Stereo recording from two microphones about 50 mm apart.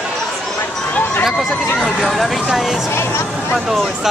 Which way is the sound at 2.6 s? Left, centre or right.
Centre.